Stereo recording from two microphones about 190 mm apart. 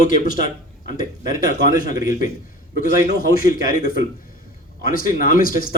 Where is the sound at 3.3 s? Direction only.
50° left (ahead or behind).